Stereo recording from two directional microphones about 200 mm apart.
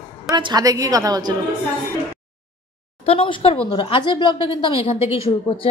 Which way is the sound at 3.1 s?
25° left (ahead or behind).